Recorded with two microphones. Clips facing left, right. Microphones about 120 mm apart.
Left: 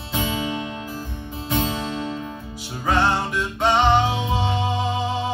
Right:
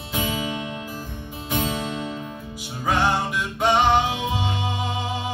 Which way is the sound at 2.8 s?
10° right (ahead or behind).